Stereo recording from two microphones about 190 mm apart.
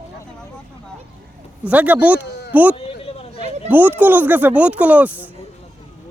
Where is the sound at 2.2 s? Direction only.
65° left (ahead or behind).